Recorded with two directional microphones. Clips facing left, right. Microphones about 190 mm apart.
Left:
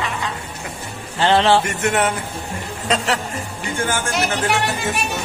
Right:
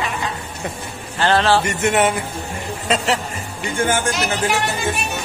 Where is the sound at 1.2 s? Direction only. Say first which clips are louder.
Left 1 dB; 20° left (ahead or behind).